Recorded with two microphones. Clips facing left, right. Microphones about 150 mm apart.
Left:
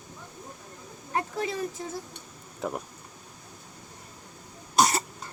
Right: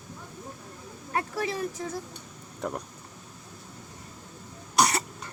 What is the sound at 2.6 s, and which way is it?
Speech, 5° left (ahead or behind).